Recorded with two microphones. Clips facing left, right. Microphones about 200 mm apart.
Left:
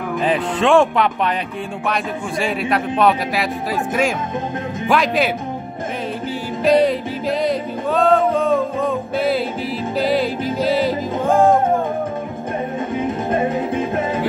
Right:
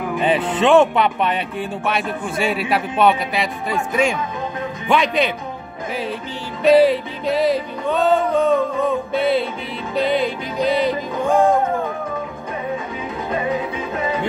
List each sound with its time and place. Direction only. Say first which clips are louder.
0.1 s a man's voice: even; centre (ahead or behind)
6.6 s music: right 2 dB; 5° right (ahead or behind)
9.9 s a man's voice: even; centre (ahead or behind)
13.0 s music: left 6 dB; 50° left (ahead or behind)